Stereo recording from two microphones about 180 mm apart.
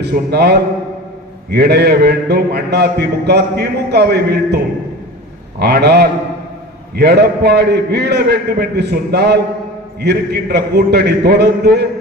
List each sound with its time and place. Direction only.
0.0 s a man's voice: 65° right (ahead or behind)